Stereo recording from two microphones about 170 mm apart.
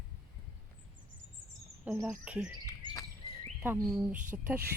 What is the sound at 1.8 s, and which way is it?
Speech, 10° right (ahead or behind).